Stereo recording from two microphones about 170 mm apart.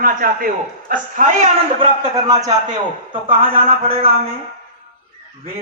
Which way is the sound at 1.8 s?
20° right (ahead or behind).